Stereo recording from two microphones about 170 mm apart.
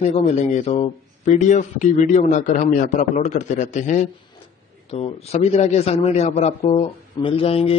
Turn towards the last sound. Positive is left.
turn(degrees=35)  # may be behind; listen again after turning